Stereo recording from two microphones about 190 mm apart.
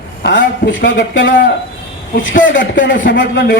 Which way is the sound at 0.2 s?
65° left (ahead or behind).